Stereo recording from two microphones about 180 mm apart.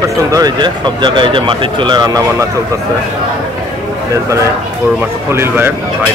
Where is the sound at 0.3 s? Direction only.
20° right (ahead or behind).